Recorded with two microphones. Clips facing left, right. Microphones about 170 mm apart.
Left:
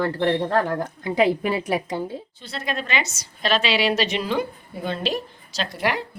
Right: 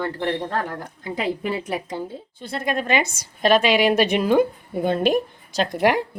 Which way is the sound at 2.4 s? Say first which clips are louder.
Right 6 dB; 50° right (ahead or behind).